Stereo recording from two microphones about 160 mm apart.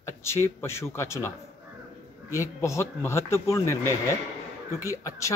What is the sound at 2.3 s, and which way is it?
Speech, 20° left (ahead or behind).